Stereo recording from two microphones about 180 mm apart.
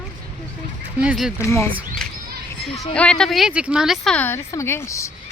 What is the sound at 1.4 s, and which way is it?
Speech, 15° left (ahead or behind).